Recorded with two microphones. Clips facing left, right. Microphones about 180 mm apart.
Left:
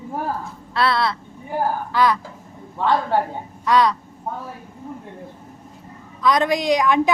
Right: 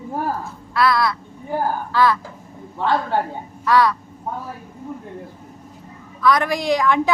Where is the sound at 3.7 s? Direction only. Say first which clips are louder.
Right 1 dB; 20° left (ahead or behind).